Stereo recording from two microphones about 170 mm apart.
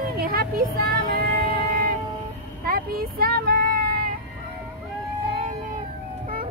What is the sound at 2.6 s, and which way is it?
Vehicle, 60° right (ahead or behind).